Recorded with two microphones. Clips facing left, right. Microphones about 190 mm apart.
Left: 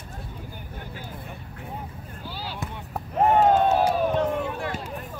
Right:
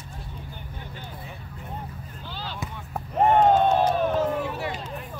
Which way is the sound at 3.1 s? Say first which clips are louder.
Even; 5° left (ahead or behind).